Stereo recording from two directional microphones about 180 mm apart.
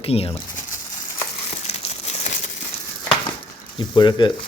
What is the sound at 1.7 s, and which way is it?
Crumpling, 35° left (ahead or behind).